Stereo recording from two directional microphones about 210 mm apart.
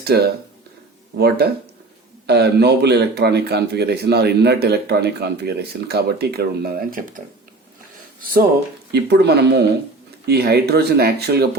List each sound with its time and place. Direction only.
0.0 s speech: 50° right (ahead or behind)
2.2 s speech: 50° right (ahead or behind)
8.2 s speech: 45° right (ahead or behind)